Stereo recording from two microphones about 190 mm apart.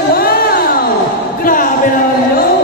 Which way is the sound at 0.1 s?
55° left (ahead or behind).